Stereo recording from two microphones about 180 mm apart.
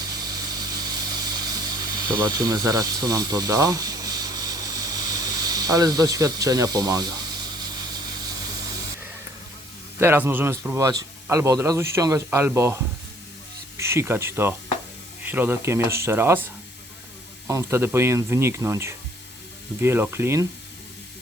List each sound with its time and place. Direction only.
0.0 s a sound: 20° right (ahead or behind)
10.0 s speech: 15° right (ahead or behind)
17.5 s speech: 15° right (ahead or behind)